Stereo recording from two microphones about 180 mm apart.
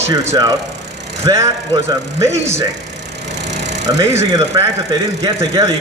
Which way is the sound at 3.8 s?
15° right (ahead or behind).